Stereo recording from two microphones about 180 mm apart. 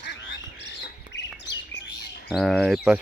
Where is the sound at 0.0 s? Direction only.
75° left (ahead or behind).